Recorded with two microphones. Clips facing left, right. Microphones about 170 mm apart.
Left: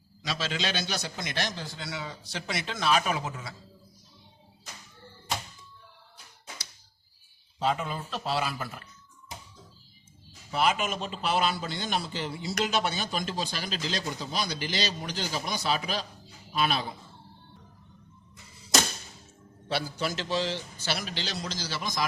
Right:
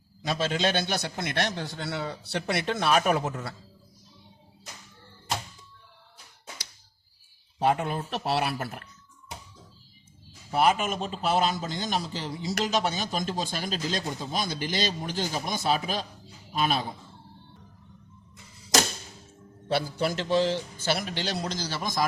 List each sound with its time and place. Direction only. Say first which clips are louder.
0.3 s a man's voice: right 5 dB; 50° right (ahead or behind)
7.6 s a man's voice: right 4 dB; 60° right (ahead or behind)
10.5 s a man's voice: right 3 dB; 50° right (ahead or behind)
19.6 s a man's voice: right 4 dB; 55° right (ahead or behind)